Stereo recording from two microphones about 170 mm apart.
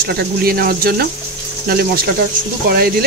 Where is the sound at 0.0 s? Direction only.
65° right (ahead or behind).